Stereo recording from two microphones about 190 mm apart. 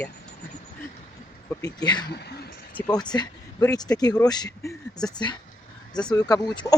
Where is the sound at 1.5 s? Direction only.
20° left (ahead or behind).